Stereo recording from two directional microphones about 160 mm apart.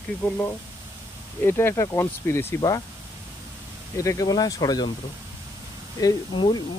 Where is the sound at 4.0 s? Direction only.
20° left (ahead or behind).